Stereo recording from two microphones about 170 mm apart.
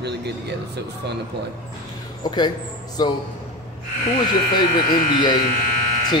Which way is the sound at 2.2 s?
25° left (ahead or behind).